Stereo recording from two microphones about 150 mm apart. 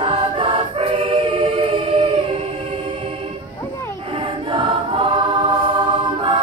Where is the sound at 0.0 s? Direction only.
35° right (ahead or behind).